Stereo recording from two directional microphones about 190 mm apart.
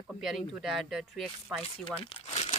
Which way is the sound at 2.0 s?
30° left (ahead or behind).